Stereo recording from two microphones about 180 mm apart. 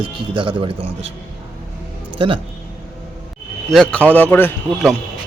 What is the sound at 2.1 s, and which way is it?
Speech, 30° right (ahead or behind).